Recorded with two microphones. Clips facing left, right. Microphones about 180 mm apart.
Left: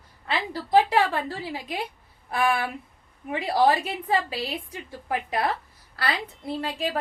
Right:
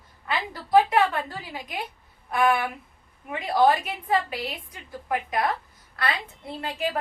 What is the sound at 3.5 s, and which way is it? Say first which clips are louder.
A woman's voice: right 1 dB; 25° left (ahead or behind).